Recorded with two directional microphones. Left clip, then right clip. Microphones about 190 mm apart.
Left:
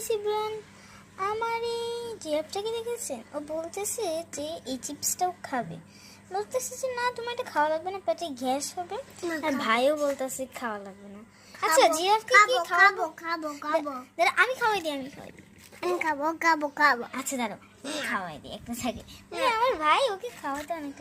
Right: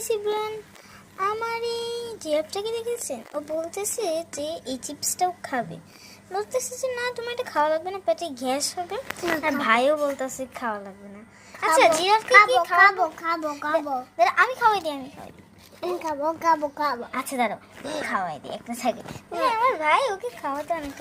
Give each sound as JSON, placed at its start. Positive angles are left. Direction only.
{"t": 0.0, "sound": "speech", "side_deg": 5}
{"t": 9.4, "sound": "a woman's voice", "side_deg": 15}
{"t": 12.8, "sound": "speech", "side_deg": 25}
{"t": 16.0, "sound": "a child's voice", "side_deg": 45}
{"t": 17.1, "sound": "a woman's voice", "side_deg": 10}
{"t": 19.5, "sound": "a woman's voice", "side_deg": 20}